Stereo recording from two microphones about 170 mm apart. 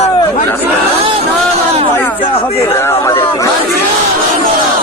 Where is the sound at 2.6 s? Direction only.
15° left (ahead or behind).